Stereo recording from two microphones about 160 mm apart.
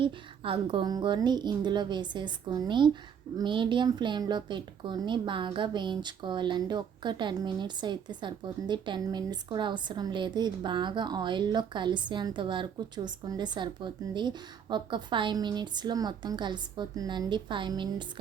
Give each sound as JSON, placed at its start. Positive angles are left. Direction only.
{"t": 0.0, "sound": "a woman's voice", "side_deg": -35}